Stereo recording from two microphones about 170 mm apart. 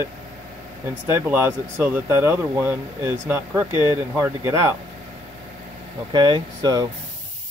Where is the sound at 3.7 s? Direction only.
25° left (ahead or behind).